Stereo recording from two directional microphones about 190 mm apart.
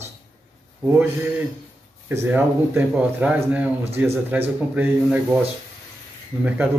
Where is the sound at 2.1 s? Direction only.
10° right (ahead or behind).